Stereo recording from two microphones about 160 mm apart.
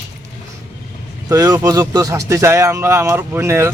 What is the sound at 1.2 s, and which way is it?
A man's voice, 20° right (ahead or behind).